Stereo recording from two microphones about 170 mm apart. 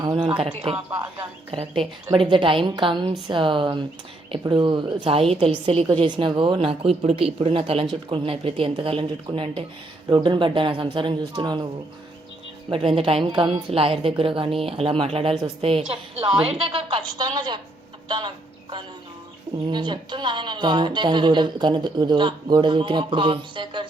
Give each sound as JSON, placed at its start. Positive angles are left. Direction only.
{"t": 0.0, "sound": "speech", "side_deg": -25}
{"t": 1.5, "sound": "a woman's voice", "side_deg": -35}
{"t": 12.7, "sound": "a woman's voice", "side_deg": -30}